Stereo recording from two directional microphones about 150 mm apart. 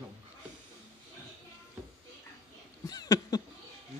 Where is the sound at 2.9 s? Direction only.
25° left (ahead or behind).